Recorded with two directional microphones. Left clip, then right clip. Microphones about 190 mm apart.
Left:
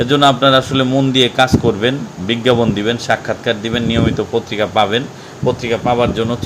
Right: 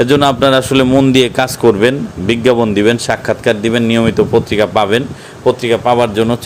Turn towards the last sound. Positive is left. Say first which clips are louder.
# right 4 dB
turn(degrees=-45)  # may be behind; listen again after turning